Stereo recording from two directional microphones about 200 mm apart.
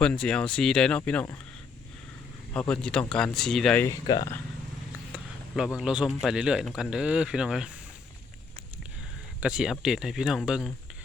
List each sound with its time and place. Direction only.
0.0 s speech: 5° left (ahead or behind)
2.5 s speech: 5° left (ahead or behind)
4.1 s speech: 20° left (ahead or behind)
5.8 s speech: 5° right (ahead or behind)
9.4 s speech: 5° right (ahead or behind)